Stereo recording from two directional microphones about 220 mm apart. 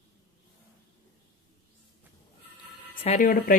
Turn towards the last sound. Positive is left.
turn(degrees=35)  # may be behind; listen again after turning